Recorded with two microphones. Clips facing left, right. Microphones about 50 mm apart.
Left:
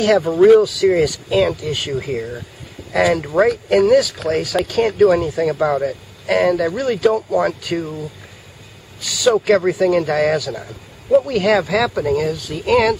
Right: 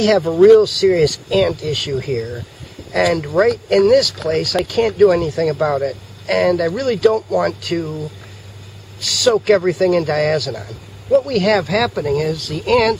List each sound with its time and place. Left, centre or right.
0.0 s speech: centre
9.3 s speech: centre
12.4 s speech: centre